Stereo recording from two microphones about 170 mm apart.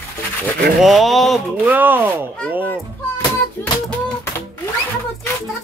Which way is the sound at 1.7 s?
10° right (ahead or behind).